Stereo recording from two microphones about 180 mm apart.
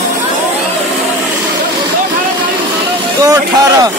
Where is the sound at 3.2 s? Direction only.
20° right (ahead or behind).